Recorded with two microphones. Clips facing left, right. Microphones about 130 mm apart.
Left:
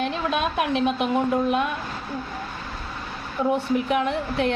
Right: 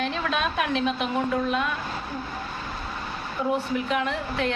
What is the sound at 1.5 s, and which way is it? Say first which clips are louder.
Speech: left 3 dB; 55° left (ahead or behind).